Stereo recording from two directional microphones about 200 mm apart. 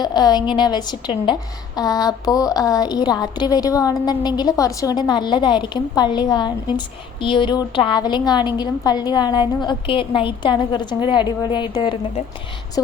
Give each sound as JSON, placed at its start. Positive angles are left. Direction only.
{"t": 0.0, "sound": "a woman's voice", "side_deg": 20}